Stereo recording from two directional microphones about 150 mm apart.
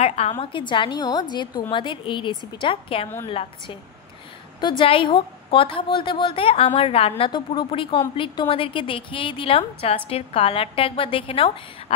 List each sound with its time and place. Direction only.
0.0 s a woman's voice: 45° left (ahead or behind)